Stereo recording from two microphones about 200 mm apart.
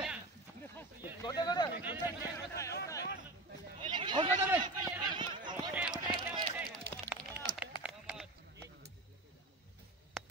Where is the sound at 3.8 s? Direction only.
25° right (ahead or behind).